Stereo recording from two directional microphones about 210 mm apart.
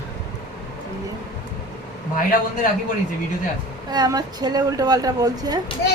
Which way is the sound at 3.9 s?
20° right (ahead or behind).